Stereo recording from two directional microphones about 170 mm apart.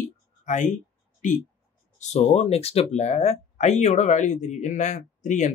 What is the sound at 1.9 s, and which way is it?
Speech, 40° left (ahead or behind).